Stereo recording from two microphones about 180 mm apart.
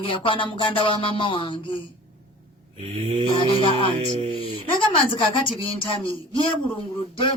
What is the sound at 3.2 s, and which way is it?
Speech, 25° left (ahead or behind).